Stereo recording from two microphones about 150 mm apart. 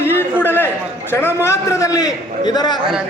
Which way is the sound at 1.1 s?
15° left (ahead or behind).